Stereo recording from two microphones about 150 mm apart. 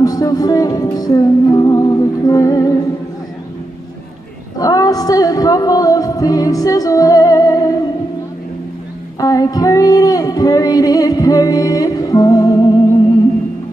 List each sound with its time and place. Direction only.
0.0 s music: 25° left (ahead or behind)
4.6 s music: 25° left (ahead or behind)
9.2 s a sound: 25° left (ahead or behind)